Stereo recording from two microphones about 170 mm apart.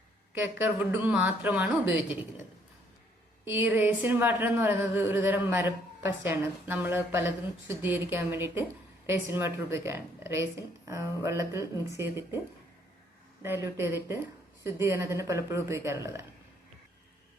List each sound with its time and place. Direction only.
0.3 s speech: 10° right (ahead or behind)
3.4 s speech: 10° right (ahead or behind)
13.4 s speech: 15° right (ahead or behind)